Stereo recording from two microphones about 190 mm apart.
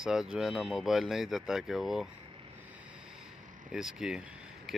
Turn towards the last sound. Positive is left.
turn(degrees=-5)  # may be behind; listen again after turning